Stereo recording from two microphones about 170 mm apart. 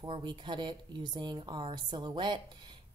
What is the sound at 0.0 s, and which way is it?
A woman's voice, 25° right (ahead or behind).